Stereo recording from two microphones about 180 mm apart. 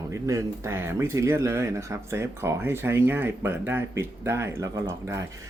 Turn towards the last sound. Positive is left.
turn(degrees=-15)  # may be behind; listen again after turning